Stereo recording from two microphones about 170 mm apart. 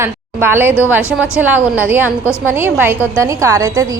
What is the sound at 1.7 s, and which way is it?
A woman's voice, 10° right (ahead or behind).